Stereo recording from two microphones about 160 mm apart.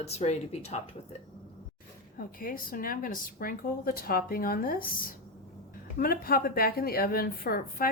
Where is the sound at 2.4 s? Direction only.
60° left (ahead or behind).